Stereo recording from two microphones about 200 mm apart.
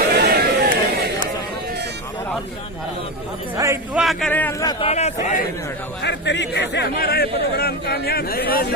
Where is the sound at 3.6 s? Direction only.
15° right (ahead or behind).